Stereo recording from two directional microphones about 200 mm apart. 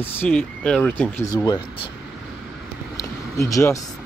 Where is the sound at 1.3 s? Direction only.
20° left (ahead or behind).